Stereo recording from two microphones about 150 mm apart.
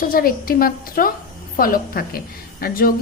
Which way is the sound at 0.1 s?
75° left (ahead or behind).